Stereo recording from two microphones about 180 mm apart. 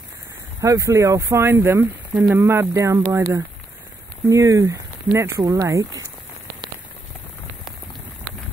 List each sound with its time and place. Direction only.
0.6 s speech: 20° right (ahead or behind)